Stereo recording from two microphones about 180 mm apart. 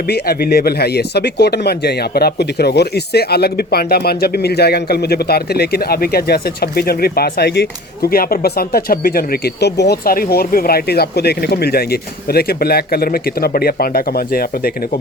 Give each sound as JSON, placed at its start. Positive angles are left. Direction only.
{"t": 0.1, "sound": "speech", "side_deg": 60}